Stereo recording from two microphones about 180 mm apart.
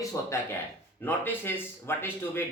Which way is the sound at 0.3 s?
15° left (ahead or behind).